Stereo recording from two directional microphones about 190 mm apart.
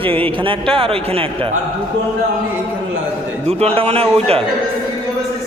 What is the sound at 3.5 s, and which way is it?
Speech, 30° right (ahead or behind).